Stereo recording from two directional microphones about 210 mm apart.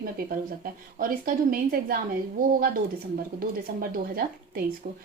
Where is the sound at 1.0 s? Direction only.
40° right (ahead or behind).